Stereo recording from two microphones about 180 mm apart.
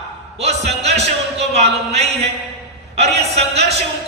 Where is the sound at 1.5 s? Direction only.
35° right (ahead or behind).